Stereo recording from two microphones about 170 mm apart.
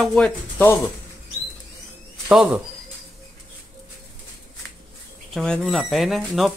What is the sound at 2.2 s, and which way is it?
Speech, 5° right (ahead or behind).